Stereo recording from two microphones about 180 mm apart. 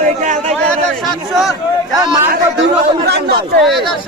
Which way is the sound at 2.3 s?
65° right (ahead or behind).